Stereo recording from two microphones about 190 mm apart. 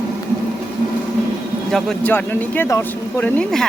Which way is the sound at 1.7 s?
5° left (ahead or behind).